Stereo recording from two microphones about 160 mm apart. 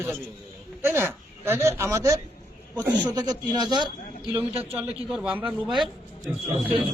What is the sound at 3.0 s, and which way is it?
A man's voice, 25° right (ahead or behind).